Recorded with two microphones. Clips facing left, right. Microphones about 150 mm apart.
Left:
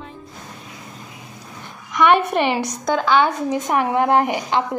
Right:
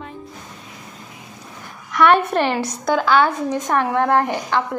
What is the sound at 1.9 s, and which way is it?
A woman's voice, 10° left (ahead or behind).